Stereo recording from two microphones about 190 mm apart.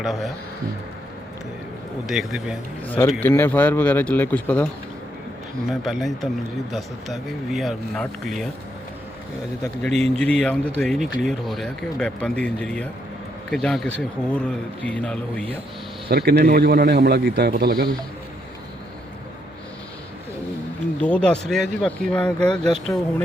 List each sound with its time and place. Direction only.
0.0 s a man's voice: centre (ahead or behind)
2.0 s a man's voice: centre (ahead or behind)
2.8 s a man's voice: 10° left (ahead or behind)
9.8 s a man's voice: 5° left (ahead or behind)
16.0 s a man's voice: 55° right (ahead or behind)
21.0 s a man's voice: 5° left (ahead or behind)